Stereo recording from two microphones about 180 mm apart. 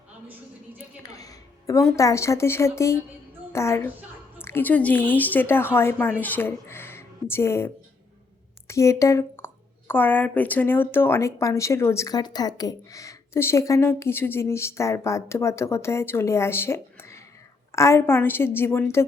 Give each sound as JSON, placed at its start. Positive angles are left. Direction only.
{"t": 1.0, "sound": "a woman's voice", "side_deg": 20}